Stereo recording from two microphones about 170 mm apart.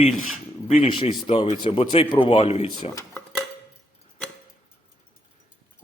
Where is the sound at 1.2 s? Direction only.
35° left (ahead or behind).